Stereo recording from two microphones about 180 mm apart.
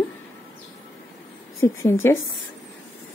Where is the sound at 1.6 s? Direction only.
15° left (ahead or behind).